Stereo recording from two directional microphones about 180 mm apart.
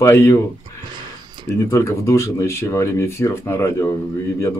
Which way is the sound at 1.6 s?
15° left (ahead or behind).